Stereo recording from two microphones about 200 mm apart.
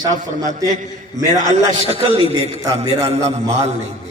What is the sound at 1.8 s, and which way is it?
Speech, 30° right (ahead or behind).